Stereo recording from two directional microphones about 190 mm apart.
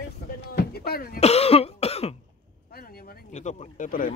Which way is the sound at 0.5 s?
55° left (ahead or behind).